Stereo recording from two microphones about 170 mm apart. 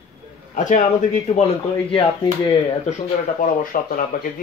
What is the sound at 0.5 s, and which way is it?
Speech, 45° left (ahead or behind).